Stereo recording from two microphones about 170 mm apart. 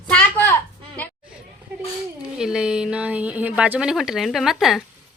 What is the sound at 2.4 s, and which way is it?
A woman's voice, 5° right (ahead or behind).